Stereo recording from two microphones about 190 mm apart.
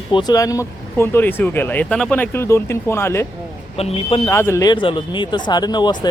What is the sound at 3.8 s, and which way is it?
Speech, 30° left (ahead or behind).